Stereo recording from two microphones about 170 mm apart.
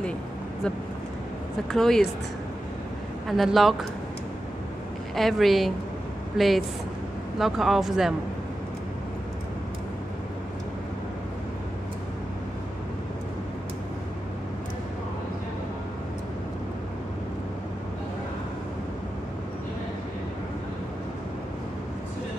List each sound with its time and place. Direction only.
1.7 s speech: 5° left (ahead or behind)
3.3 s speech: centre (ahead or behind)
5.1 s speech: centre (ahead or behind)